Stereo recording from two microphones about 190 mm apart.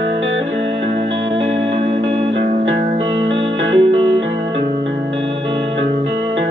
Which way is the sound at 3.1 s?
80° right.